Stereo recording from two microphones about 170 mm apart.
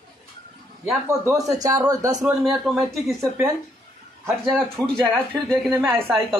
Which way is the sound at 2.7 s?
Centre (ahead or behind).